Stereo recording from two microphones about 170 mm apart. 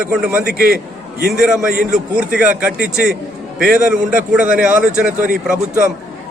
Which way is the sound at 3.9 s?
5° right (ahead or behind).